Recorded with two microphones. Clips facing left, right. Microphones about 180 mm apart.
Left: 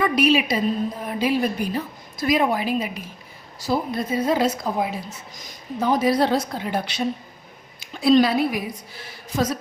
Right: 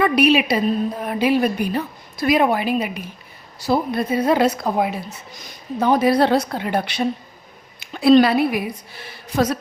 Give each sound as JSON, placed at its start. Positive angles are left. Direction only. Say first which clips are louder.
{"t": 0.0, "sound": "a woman's voice", "louder": "right 3 dB", "side_deg": -65}